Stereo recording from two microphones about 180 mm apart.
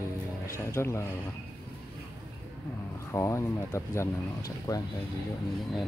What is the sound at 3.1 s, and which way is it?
Speech, 15° left (ahead or behind).